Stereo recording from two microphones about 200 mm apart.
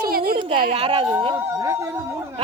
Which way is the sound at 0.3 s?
25° right (ahead or behind).